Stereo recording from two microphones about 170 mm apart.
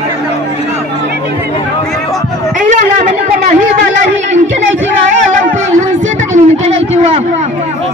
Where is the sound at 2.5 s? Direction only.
50° right (ahead or behind).